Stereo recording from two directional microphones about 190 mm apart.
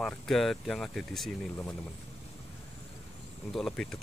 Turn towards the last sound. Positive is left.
turn(degrees=0)  # may be behind; listen again after turning